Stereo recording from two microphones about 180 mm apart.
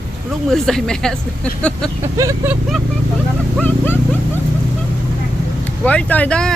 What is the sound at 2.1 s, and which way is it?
Speech, 15° right (ahead or behind).